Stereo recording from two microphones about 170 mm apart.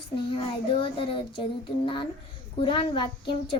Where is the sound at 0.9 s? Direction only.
30° left (ahead or behind).